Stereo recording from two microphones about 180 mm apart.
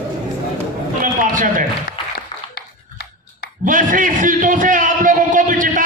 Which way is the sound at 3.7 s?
50° right (ahead or behind).